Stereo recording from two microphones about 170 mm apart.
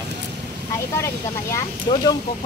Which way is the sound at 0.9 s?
15° left (ahead or behind).